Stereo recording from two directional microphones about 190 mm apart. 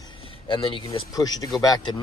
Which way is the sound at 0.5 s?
25° left (ahead or behind).